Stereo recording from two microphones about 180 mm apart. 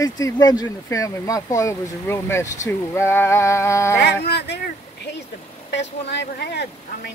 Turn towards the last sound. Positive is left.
turn(degrees=65)  # may be behind; listen again after turning